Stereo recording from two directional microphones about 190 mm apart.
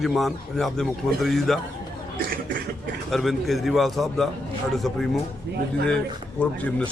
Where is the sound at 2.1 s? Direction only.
50° right (ahead or behind).